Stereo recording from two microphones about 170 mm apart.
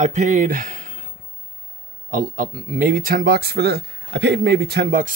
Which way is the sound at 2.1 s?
55° right (ahead or behind).